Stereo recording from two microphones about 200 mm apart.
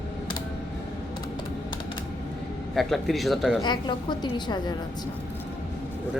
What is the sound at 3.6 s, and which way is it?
A woman's voice, 20° left (ahead or behind).